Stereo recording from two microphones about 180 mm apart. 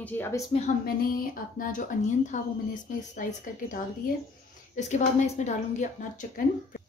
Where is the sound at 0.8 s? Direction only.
55° left (ahead or behind).